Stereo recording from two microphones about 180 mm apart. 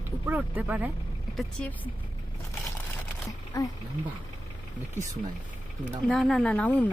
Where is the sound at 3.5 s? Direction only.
20° left (ahead or behind).